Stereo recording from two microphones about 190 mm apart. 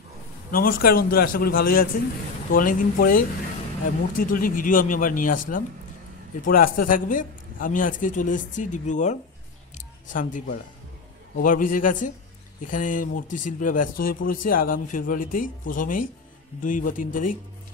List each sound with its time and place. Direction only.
0.5 s speech: 50° left (ahead or behind)